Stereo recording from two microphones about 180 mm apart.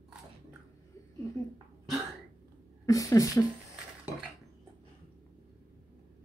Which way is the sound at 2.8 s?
20° left (ahead or behind).